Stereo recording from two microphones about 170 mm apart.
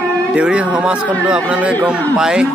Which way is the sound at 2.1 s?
5° right (ahead or behind).